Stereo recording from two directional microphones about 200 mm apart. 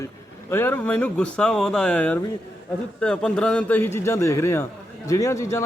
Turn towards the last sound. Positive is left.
turn(degrees=15)  # may be behind; listen again after turning